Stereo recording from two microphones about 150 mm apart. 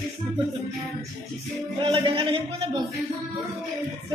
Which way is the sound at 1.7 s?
35° right (ahead or behind).